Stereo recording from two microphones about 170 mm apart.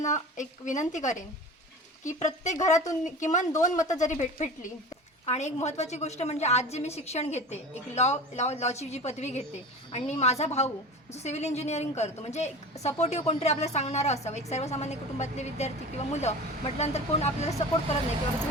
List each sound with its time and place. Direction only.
0.0 s a woman's voice: 45° left (ahead or behind)